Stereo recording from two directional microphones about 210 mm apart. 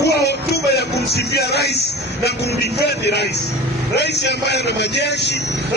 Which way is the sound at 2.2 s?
50° left (ahead or behind).